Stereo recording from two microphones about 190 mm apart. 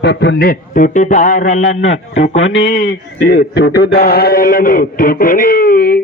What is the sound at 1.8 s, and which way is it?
Speech, 90° left.